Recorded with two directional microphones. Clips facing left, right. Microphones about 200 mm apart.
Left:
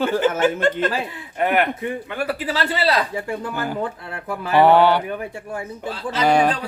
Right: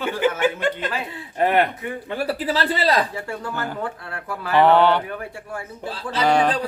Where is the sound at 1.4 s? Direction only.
30° right (ahead or behind).